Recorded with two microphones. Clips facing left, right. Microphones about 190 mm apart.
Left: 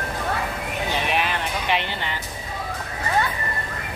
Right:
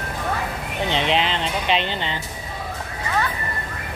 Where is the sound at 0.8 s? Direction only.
20° right (ahead or behind).